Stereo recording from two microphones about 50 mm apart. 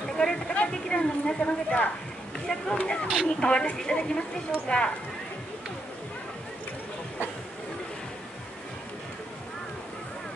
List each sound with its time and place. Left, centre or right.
0.1 s a sound: centre
0.6 s a woman's voice: left
2.4 s speech: centre
2.8 s a woman's voice: left